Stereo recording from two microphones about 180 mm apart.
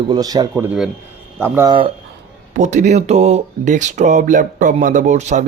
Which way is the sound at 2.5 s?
40° right (ahead or behind).